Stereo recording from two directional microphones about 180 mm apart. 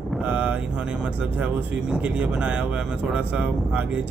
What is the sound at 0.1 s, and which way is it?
Speech, 5° right (ahead or behind).